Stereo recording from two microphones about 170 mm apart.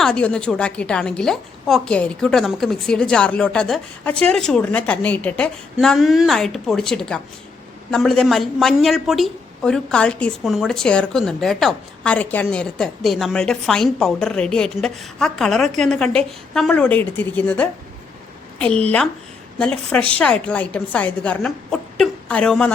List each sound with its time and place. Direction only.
0.0 s a woman's voice: 5° left (ahead or behind)
19.5 s a woman's voice: 5° left (ahead or behind)